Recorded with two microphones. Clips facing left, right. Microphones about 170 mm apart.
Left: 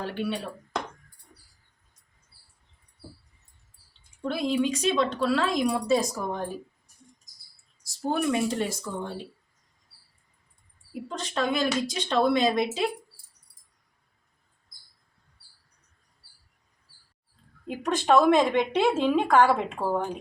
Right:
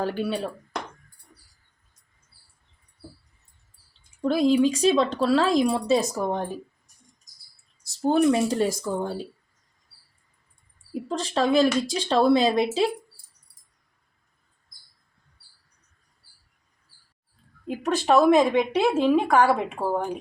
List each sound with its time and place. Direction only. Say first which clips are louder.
0.0 s speech: right 4 dB; 40° right (ahead or behind)
4.2 s speech: right 6 dB; 35° right (ahead or behind)
8.0 s speech: right 6 dB; 30° right (ahead or behind)
11.1 s speech: right 6 dB; 30° right (ahead or behind)
17.7 s speech: right 1 dB; 5° right (ahead or behind)